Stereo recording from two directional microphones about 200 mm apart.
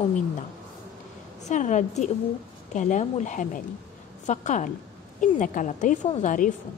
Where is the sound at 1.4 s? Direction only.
35° left (ahead or behind).